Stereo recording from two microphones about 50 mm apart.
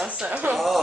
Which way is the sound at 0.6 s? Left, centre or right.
Centre.